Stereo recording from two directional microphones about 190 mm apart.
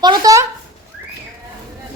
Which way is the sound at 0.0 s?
20° right (ahead or behind).